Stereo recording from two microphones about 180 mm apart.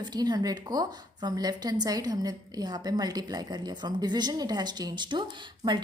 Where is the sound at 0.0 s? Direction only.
25° right (ahead or behind).